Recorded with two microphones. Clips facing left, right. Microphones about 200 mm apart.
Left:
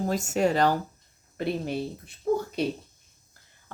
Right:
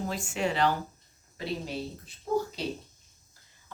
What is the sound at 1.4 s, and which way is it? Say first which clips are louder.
Speech: left 5 dB; 55° left (ahead or behind).